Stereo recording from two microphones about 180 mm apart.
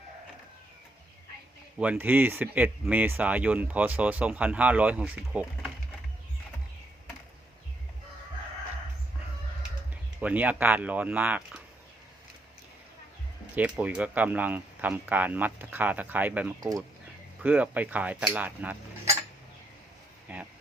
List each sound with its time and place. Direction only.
1.8 s speech: 10° right (ahead or behind)
10.2 s speech: 10° right (ahead or behind)
13.6 s speech: 10° right (ahead or behind)
16.6 s speech: 20° right (ahead or behind)
17.4 s speech: 10° right (ahead or behind)
20.2 s a sound: 10° right (ahead or behind)